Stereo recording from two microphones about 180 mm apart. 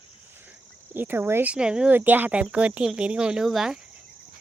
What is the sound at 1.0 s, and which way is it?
Speech, 10° right (ahead or behind).